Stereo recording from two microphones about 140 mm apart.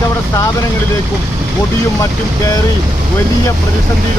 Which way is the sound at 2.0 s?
25° left (ahead or behind).